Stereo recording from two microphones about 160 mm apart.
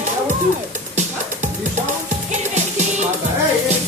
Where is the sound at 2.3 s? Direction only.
50° right (ahead or behind).